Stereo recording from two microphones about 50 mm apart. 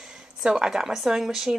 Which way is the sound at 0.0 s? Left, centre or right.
Centre.